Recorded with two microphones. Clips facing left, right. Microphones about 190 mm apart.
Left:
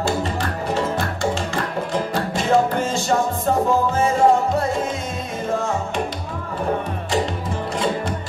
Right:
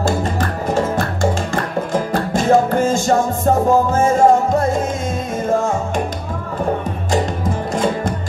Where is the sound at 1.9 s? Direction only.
45° right (ahead or behind).